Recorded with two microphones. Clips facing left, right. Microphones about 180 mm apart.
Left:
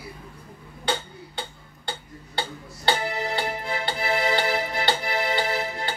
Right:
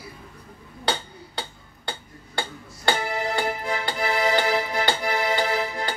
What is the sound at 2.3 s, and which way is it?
Music, 50° right (ahead or behind).